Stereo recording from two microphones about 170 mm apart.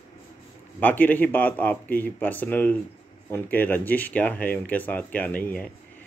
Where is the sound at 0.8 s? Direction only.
10° left (ahead or behind).